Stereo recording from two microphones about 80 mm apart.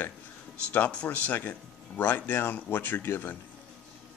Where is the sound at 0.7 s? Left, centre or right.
Centre.